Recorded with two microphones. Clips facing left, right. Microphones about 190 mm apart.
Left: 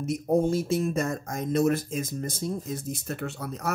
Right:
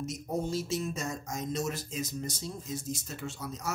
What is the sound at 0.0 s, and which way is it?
Speech, 55° left (ahead or behind).